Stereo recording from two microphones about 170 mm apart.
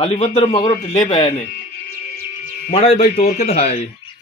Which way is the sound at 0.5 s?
25° left (ahead or behind).